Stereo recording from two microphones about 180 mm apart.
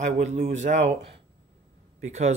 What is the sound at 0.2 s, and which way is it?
Speech, 40° right (ahead or behind).